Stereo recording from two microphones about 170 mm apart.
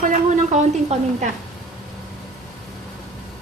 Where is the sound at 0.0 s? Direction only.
45° right (ahead or behind).